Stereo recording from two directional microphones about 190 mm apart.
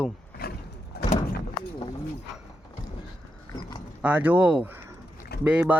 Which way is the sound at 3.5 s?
20° left (ahead or behind).